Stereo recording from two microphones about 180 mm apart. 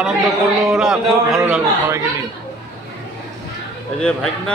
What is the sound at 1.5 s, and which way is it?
Speech, 15° right (ahead or behind).